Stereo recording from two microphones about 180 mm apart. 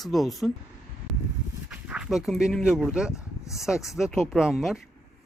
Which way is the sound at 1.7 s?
5° right (ahead or behind).